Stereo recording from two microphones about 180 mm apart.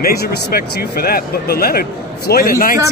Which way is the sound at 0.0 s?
55° left (ahead or behind).